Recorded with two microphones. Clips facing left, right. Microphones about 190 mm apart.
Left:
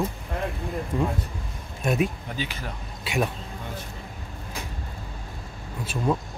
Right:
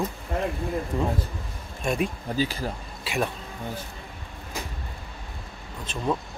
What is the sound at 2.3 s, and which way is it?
Speech, 35° right (ahead or behind).